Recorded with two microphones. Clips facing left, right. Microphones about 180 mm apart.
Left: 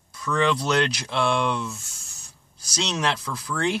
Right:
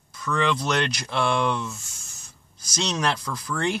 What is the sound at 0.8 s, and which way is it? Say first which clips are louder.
Speech: left 1 dB; centre (ahead or behind).